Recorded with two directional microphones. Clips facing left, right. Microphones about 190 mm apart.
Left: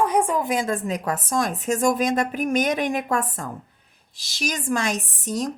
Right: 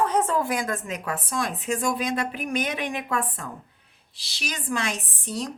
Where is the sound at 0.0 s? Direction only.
10° left (ahead or behind).